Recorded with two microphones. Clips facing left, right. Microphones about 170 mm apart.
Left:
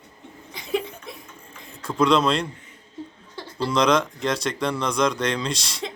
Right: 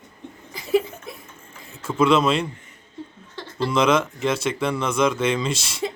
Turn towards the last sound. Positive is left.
turn(degrees=-5)  # may be behind; listen again after turning